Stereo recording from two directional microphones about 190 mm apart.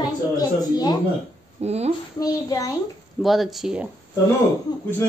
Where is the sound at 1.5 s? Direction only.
35° right (ahead or behind).